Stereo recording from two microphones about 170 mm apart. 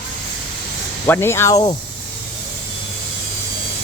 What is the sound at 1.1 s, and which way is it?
Speech, 15° left (ahead or behind).